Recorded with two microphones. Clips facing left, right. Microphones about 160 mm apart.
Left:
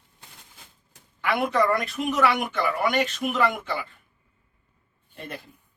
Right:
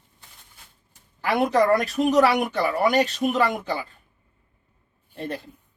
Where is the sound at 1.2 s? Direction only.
35° right (ahead or behind).